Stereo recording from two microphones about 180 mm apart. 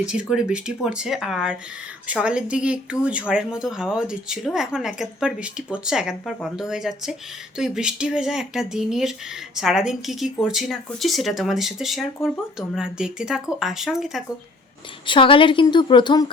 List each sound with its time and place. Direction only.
0.0 s speech: 5° right (ahead or behind)
15.0 s a woman's voice: 30° left (ahead or behind)